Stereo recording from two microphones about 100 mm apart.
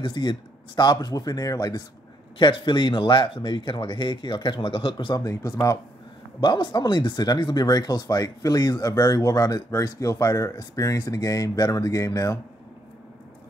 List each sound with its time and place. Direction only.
0.0 s speech: 50° left (ahead or behind)
2.3 s speech: 50° left (ahead or behind); by 5.8 s 35° left (ahead or behind)
6.4 s speech: 50° left (ahead or behind); by 12.4 s 35° left (ahead or behind)